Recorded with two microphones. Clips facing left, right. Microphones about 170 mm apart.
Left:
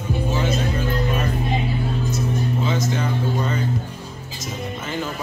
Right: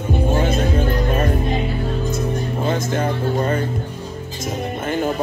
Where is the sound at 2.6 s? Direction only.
55° right (ahead or behind).